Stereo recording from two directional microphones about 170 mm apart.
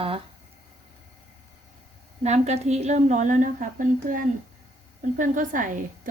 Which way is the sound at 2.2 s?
40° right (ahead or behind).